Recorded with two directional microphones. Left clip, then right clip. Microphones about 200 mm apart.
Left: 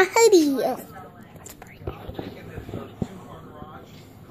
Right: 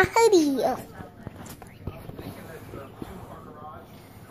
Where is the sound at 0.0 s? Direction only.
20° left (ahead or behind).